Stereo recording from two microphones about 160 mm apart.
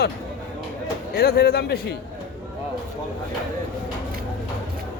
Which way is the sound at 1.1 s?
90° left.